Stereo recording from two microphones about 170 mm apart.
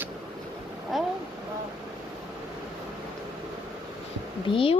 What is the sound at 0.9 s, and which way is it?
Speech, centre (ahead or behind).